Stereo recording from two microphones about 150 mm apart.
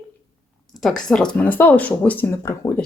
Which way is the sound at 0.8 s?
5° left (ahead or behind).